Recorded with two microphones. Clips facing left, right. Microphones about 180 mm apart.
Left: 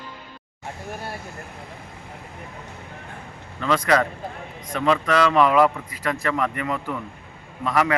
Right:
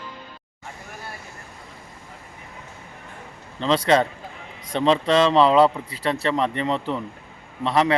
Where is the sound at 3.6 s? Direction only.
25° right (ahead or behind).